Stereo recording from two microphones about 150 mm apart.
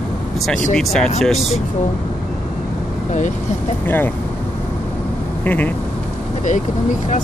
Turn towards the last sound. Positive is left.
turn(degrees=10)  # may be behind; listen again after turning